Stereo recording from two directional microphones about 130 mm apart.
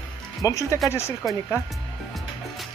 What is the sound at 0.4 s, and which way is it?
Speech, 25° left (ahead or behind).